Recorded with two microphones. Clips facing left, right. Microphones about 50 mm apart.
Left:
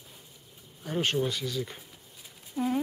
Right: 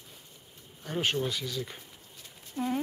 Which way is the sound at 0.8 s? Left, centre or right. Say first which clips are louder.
Left 2 dB; centre.